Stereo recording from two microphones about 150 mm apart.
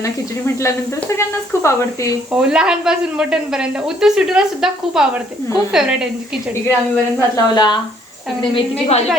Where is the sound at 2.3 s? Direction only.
5° right (ahead or behind).